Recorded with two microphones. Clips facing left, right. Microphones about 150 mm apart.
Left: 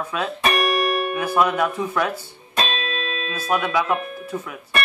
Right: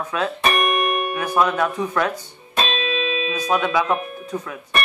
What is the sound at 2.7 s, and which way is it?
Music, centre (ahead or behind).